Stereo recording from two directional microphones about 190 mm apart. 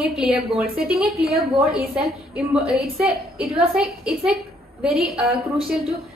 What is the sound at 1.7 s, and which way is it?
A woman's voice, centre (ahead or behind).